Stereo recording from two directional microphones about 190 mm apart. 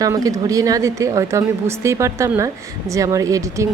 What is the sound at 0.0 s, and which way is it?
A woman's voice, 20° right (ahead or behind).